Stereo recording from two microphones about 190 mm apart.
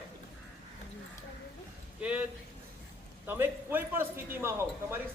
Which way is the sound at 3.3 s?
10° right (ahead or behind).